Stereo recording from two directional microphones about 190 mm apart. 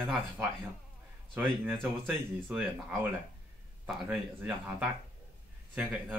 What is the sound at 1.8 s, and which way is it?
Speech, centre (ahead or behind).